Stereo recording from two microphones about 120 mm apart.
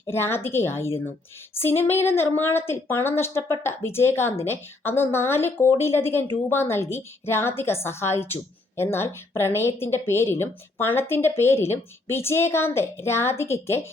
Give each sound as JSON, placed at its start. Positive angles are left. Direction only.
{"t": 0.1, "sound": "a woman's voice", "side_deg": 20}